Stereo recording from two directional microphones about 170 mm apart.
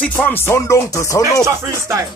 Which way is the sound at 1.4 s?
15° right (ahead or behind).